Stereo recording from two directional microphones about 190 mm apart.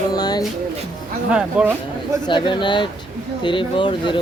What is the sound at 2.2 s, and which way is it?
Speech, 25° left (ahead or behind).